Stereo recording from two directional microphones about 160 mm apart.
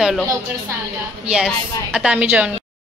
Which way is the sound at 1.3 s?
5° right (ahead or behind).